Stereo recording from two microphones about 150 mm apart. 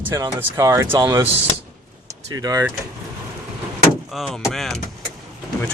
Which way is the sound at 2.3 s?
25° right (ahead or behind).